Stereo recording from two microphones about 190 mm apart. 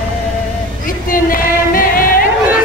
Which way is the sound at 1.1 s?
45° left (ahead or behind).